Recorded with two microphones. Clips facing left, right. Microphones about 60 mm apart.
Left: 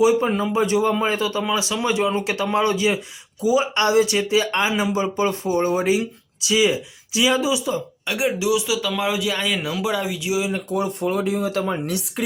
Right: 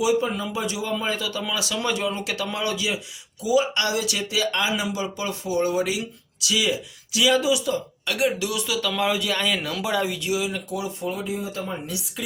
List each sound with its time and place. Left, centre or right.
0.0 s speech: left; by 10.2 s centre
10.2 s speech: left
10.7 s speech: left